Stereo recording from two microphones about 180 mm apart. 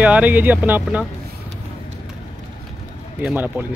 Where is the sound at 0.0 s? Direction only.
10° right (ahead or behind).